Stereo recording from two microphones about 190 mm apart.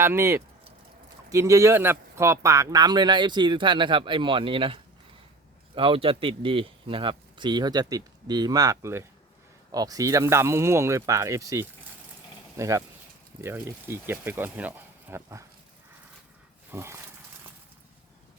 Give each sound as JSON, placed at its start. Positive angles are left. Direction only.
{"t": 0.0, "sound": "a man's voice", "side_deg": -15}
{"t": 16.7, "sound": "speech", "side_deg": -15}